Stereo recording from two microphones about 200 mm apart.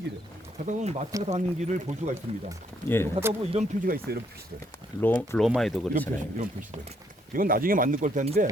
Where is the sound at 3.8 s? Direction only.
45° right (ahead or behind).